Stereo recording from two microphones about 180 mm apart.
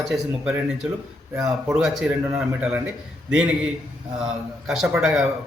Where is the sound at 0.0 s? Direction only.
5° right (ahead or behind).